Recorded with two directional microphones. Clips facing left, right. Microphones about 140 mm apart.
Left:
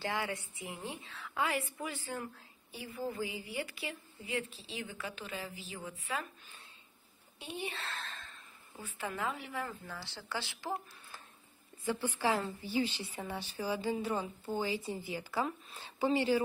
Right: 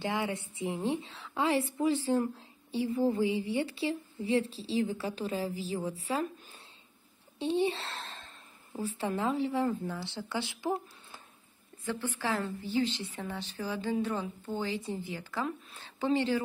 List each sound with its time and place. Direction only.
0.0 s a woman's voice: 20° right (ahead or behind)
11.8 s a woman's voice: 10° left (ahead or behind)